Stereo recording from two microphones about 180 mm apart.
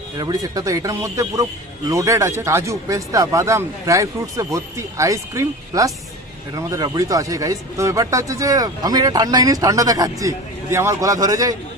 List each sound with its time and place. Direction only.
0.2 s a man's voice: 20° right (ahead or behind)